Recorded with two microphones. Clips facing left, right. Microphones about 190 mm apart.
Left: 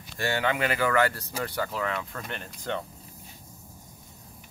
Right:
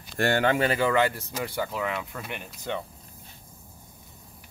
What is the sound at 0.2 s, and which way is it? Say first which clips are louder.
Speech: right 4 dB; 50° right (ahead or behind).